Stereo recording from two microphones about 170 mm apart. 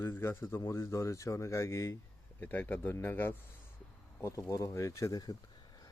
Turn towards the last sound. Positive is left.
turn(degrees=20)  # may be behind; listen again after turning